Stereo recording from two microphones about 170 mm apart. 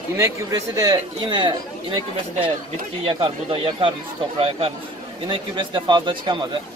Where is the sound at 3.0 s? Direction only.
30° right (ahead or behind).